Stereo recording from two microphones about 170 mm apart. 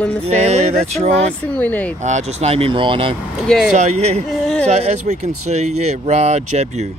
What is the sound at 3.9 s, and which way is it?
Speech, 40° right (ahead or behind).